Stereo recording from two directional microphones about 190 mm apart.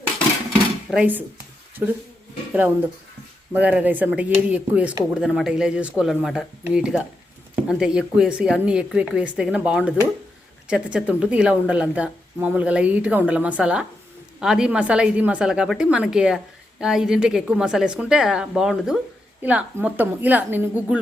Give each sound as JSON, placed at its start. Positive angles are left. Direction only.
{"t": 0.9, "sound": "speech", "side_deg": -5}
{"t": 2.5, "sound": "a woman's voice", "side_deg": -10}